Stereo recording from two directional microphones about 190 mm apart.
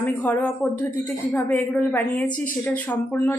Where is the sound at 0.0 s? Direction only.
10° left (ahead or behind).